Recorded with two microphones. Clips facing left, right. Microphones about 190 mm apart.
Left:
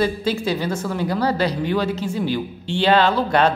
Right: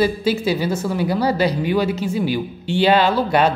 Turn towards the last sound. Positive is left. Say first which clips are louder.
# right 1 dB
turn(degrees=-10)  # may be behind; listen again after turning